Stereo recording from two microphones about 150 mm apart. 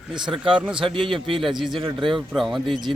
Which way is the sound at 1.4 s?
Centre (ahead or behind).